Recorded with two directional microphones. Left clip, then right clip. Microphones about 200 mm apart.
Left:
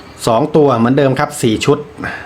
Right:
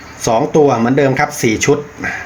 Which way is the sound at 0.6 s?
20° left (ahead or behind).